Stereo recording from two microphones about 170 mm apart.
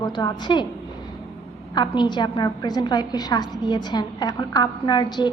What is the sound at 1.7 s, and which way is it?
A woman's voice, 25° left (ahead or behind).